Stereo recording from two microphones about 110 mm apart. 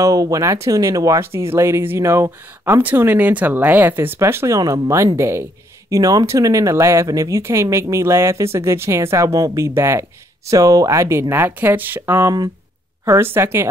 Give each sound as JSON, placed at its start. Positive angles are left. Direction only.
{"t": 0.0, "sound": "speech", "side_deg": -30}